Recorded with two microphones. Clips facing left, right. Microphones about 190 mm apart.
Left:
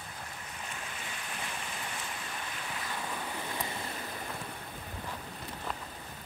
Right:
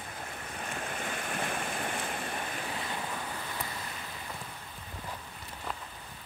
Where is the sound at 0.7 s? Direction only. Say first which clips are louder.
Right 9 dB; 55° right (ahead or behind).